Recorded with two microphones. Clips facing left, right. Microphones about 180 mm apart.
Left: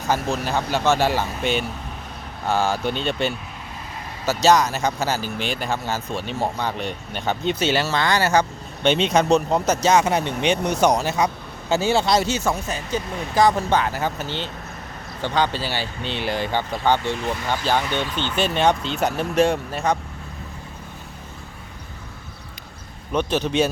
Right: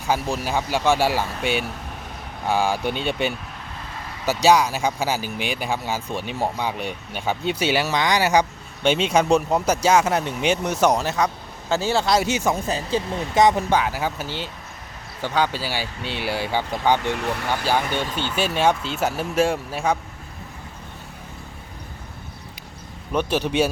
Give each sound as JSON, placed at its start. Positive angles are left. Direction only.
{"t": 0.1, "sound": "speech", "side_deg": -10}
{"t": 12.2, "sound": "speech", "side_deg": -15}
{"t": 12.6, "sound": "speech", "side_deg": -30}
{"t": 13.7, "sound": "speech", "side_deg": -10}
{"t": 17.2, "sound": "speech", "side_deg": -60}
{"t": 18.2, "sound": "speech", "side_deg": -10}
{"t": 23.1, "sound": "speech", "side_deg": -10}